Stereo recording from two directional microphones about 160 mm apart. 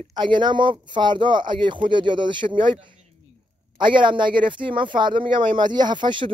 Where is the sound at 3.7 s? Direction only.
30° right (ahead or behind).